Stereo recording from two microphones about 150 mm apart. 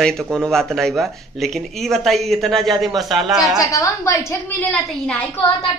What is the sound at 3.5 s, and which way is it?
A woman's voice, 20° left (ahead or behind).